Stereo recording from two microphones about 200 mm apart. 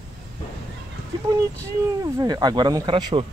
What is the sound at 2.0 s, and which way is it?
Speech, 20° right (ahead or behind).